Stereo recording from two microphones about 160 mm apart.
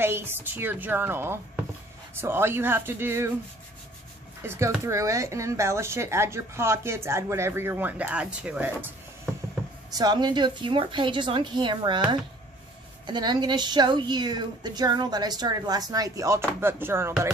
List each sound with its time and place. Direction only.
0.0 s speech: 15° right (ahead or behind)
4.4 s speech: 15° right (ahead or behind)
9.9 s a woman's voice: 25° right (ahead or behind)